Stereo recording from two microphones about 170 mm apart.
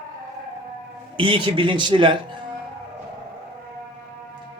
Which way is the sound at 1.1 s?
30° right (ahead or behind).